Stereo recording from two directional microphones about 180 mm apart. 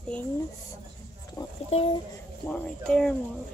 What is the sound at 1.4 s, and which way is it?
Speech, 20° left (ahead or behind).